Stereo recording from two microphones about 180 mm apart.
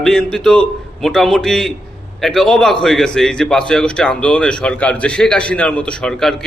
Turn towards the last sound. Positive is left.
turn(degrees=5)  # may be behind; listen again after turning